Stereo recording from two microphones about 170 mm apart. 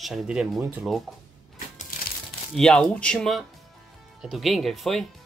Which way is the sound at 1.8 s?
50° left (ahead or behind).